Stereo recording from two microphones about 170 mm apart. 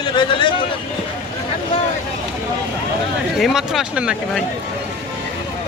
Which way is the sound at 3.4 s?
Centre (ahead or behind).